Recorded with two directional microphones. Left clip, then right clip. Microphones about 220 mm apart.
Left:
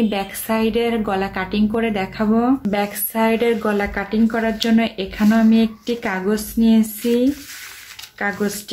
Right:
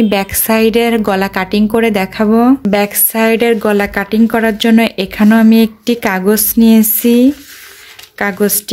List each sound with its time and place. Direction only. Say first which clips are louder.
0.1 s a woman's voice: right 9 dB; 45° right (ahead or behind)